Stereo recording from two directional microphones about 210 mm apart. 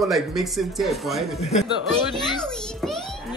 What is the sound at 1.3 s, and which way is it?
Speech, 25° left (ahead or behind).